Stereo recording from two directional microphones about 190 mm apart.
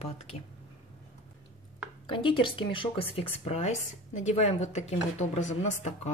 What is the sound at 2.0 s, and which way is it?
Speech, 25° left (ahead or behind).